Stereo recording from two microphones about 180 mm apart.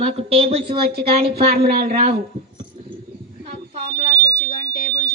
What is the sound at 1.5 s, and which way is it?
Speech, 60° right (ahead or behind).